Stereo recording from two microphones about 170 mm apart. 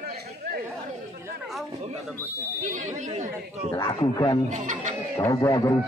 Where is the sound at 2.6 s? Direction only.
45° right (ahead or behind).